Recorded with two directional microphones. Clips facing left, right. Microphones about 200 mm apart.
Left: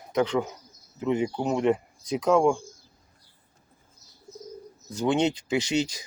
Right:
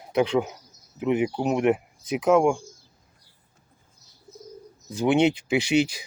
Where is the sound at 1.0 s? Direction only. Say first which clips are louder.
Right 2 dB; 15° right (ahead or behind).